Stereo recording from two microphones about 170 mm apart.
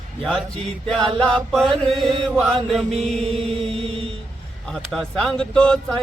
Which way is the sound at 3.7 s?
30° right (ahead or behind).